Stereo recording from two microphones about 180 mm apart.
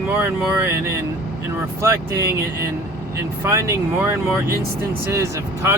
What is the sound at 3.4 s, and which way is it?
Speech, 15° right (ahead or behind).